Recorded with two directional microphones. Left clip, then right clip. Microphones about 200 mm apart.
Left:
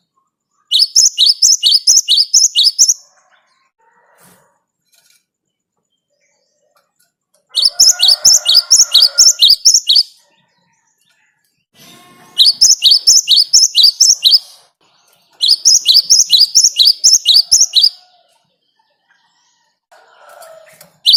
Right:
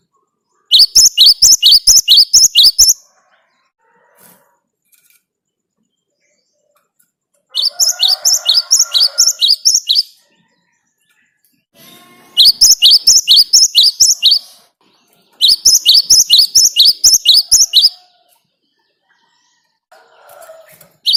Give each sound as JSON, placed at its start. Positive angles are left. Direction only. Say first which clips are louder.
{"t": 0.7, "sound": "chirp", "louder": "right 3 dB", "side_deg": -20}
{"t": 7.4, "sound": "chirp", "louder": "left 4 dB", "side_deg": 20}
{"t": 12.3, "sound": "chirp", "louder": "right 2 dB", "side_deg": -15}
{"t": 15.4, "sound": "chirp", "louder": "right 1 dB", "side_deg": -15}